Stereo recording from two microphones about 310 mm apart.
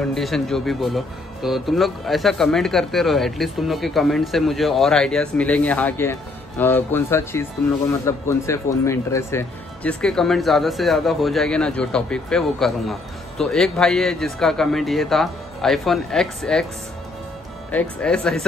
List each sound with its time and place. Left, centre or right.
0.1 s speech: centre
17.6 s speech: centre